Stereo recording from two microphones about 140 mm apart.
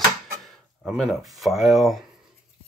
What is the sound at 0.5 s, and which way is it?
Speech, centre (ahead or behind).